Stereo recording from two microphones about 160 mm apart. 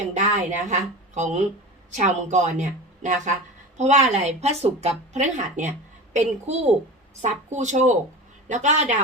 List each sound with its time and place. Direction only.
0.0 s speech: 45° right (ahead or behind)